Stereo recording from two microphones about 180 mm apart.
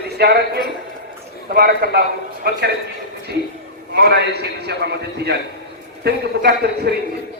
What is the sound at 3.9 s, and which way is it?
A man's voice, 65° right (ahead or behind).